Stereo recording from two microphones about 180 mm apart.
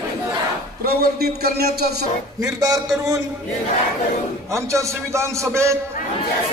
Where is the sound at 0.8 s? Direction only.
60° right (ahead or behind).